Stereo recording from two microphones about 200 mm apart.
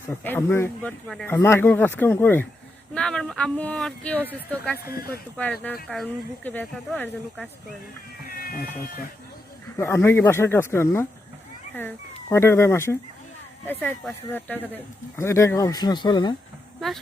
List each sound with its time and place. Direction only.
0.1 s speech: 10° left (ahead or behind)
4.2 s speech: 10° right (ahead or behind)
4.9 s speech: 50° left (ahead or behind)
5.4 s speech: 10° left (ahead or behind)
8.3 s speech: 45° left (ahead or behind)
9.7 s speech: 15° left (ahead or behind)